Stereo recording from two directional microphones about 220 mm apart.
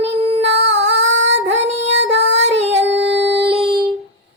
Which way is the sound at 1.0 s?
55° right (ahead or behind).